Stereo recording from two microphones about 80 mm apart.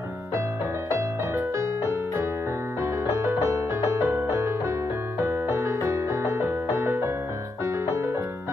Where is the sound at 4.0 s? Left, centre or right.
Right.